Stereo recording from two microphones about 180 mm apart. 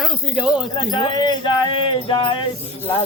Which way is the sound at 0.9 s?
25° left (ahead or behind).